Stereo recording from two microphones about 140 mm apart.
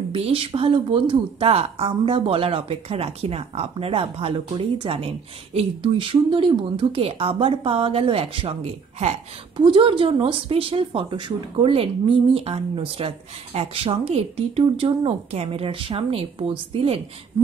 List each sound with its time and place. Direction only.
0.1 s a woman's voice: 40° right (ahead or behind)
9.7 s a woman's voice: 40° right (ahead or behind)